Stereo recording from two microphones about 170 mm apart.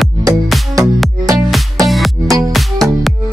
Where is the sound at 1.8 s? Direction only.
Centre (ahead or behind).